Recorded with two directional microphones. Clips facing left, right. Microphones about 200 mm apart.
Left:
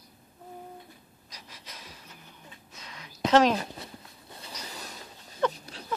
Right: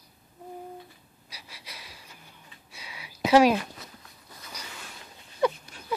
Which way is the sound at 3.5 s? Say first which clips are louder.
Right 2 dB; 30° left (ahead or behind).